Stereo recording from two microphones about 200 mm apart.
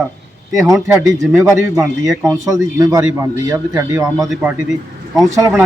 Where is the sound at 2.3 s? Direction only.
15° right (ahead or behind).